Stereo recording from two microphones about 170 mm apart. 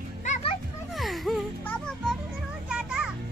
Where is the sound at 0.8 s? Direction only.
Centre (ahead or behind).